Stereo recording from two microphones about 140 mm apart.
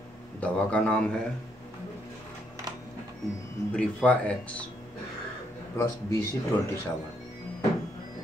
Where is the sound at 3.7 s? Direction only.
5° left (ahead or behind).